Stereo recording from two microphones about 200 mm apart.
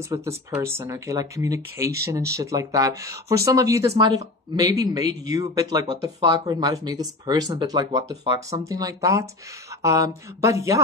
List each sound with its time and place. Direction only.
0.1 s speech: 15° right (ahead or behind)